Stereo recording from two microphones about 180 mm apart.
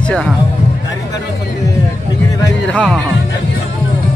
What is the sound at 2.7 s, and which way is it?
Speech, 5° left (ahead or behind).